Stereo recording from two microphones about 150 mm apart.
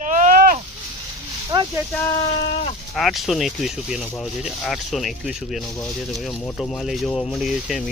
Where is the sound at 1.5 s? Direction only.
25° right (ahead or behind).